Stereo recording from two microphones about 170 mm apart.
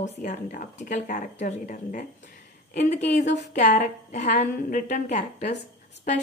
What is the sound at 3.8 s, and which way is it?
Speech, 45° left (ahead or behind).